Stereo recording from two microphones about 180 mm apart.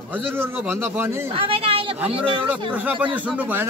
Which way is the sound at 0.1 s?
10° right (ahead or behind).